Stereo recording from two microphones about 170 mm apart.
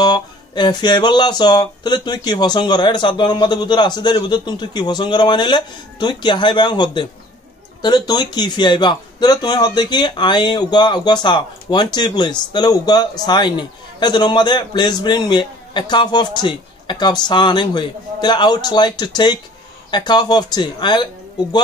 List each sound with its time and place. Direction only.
0.0 s a man's voice: 25° left (ahead or behind)